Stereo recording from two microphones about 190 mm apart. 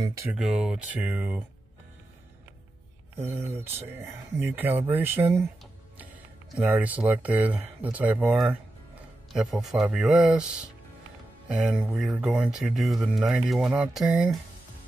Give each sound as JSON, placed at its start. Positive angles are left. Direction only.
{"t": 0.0, "sound": "speech", "side_deg": -15}
{"t": 0.3, "sound": "speech", "side_deg": -5}
{"t": 3.2, "sound": "speech", "side_deg": -10}
{"t": 5.6, "sound": "a sound", "side_deg": -10}
{"t": 6.6, "sound": "speech", "side_deg": -10}